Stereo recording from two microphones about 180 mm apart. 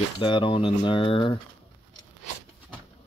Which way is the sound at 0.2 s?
25° left (ahead or behind).